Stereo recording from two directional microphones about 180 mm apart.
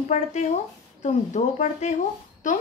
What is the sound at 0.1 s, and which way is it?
A woman's voice, 40° left (ahead or behind).